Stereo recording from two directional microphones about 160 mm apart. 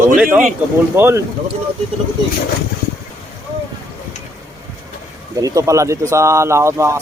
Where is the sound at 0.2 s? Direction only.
10° right (ahead or behind).